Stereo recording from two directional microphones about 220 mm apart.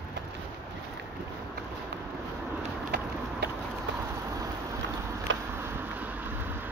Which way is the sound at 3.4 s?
50° right (ahead or behind).